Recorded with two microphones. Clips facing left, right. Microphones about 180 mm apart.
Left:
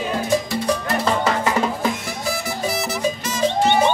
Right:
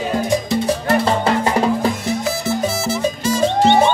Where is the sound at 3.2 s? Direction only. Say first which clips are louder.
Right 5 dB; 30° right (ahead or behind).